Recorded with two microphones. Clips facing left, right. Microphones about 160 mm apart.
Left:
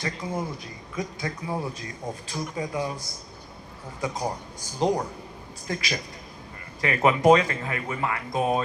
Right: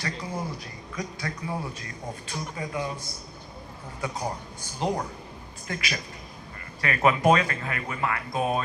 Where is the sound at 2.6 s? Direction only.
20° left (ahead or behind).